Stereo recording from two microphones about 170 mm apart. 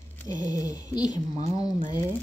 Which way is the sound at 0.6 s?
20° left (ahead or behind).